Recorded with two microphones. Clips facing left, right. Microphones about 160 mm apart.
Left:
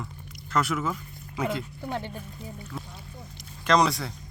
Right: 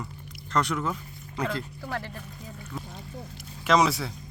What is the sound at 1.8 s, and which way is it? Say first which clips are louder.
Speech: left 2 dB; 25° left (ahead or behind).